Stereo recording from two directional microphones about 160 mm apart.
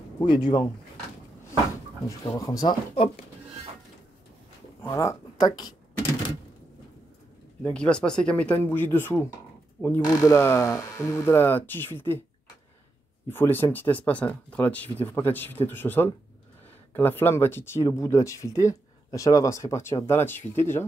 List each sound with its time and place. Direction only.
0.2 s speech: 25° left (ahead or behind)
2.0 s speech: 20° left (ahead or behind)
4.8 s speech: 15° left (ahead or behind)
7.6 s speech: 5° left (ahead or behind)
13.3 s speech: 15° left (ahead or behind)